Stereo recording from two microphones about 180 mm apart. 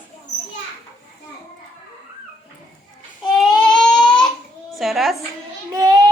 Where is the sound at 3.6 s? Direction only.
5° left (ahead or behind).